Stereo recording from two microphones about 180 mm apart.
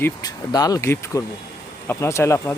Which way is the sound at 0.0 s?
20° left (ahead or behind).